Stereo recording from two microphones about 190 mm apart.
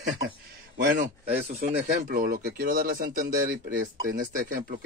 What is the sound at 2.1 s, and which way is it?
Speech, 50° right (ahead or behind).